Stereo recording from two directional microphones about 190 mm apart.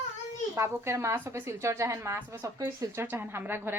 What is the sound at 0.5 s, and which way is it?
A woman's voice, 15° right (ahead or behind).